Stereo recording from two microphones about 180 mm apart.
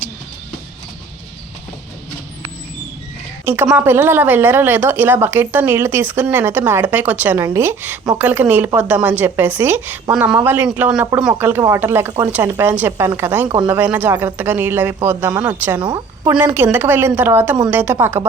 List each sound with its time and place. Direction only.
3.4 s a woman's voice: 15° right (ahead or behind)
15.3 s a woman's voice: 20° right (ahead or behind)
16.4 s a woman's voice: 10° right (ahead or behind)